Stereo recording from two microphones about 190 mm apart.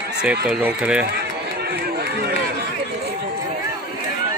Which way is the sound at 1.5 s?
55° right (ahead or behind).